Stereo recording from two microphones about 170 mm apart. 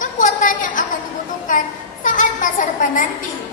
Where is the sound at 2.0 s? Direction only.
50° left (ahead or behind).